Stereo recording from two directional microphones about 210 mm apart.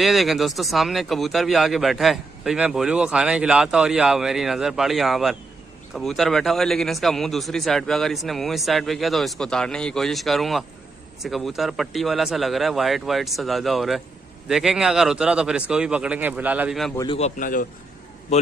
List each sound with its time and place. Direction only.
0.0 s speech: centre (ahead or behind)
16.9 s a man's voice: 20° left (ahead or behind)
17.2 s a man's voice: 40° left (ahead or behind)